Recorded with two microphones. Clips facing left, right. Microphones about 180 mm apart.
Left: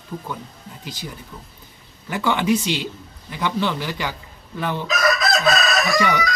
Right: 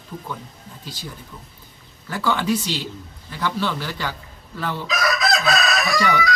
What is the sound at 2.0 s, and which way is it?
A man's voice, 15° left (ahead or behind).